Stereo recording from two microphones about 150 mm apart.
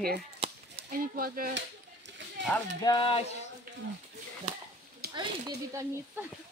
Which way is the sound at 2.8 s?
30° left (ahead or behind).